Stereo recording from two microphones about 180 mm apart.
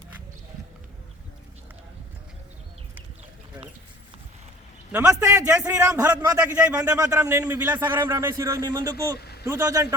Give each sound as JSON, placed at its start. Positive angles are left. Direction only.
{"t": 4.9, "sound": "a man's voice", "side_deg": -10}
{"t": 9.1, "sound": "vehicle", "side_deg": 65}
{"t": 9.4, "sound": "a man's voice", "side_deg": -15}